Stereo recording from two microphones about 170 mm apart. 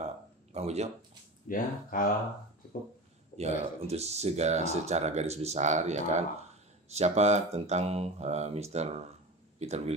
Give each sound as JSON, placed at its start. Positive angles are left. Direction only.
{"t": 0.0, "sound": "a sound", "side_deg": -40}
{"t": 1.5, "sound": "speech", "side_deg": 55}
{"t": 3.3, "sound": "speech", "side_deg": -40}